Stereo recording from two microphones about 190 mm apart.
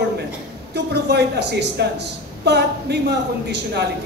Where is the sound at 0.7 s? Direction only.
60° right (ahead or behind).